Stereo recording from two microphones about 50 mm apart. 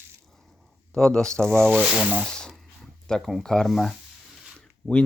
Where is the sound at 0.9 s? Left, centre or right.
Centre.